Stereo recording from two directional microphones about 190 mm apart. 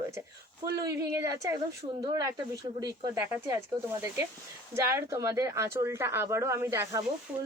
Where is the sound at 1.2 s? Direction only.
15° right (ahead or behind).